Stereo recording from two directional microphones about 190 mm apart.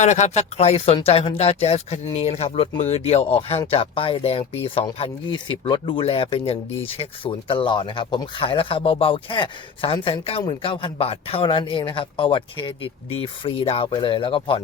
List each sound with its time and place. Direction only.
0.0 s speech: 35° left (ahead or behind)